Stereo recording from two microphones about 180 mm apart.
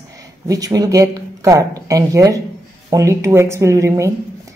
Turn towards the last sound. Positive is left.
turn(degrees=-15)  # may be behind; listen again after turning